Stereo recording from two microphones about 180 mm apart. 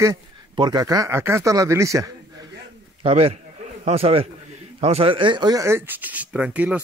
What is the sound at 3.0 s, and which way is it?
A man's voice, 35° right (ahead or behind).